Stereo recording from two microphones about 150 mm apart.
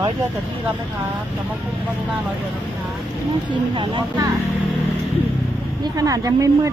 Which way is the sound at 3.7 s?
30° right (ahead or behind).